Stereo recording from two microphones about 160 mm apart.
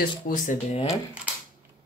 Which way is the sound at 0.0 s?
55° left (ahead or behind).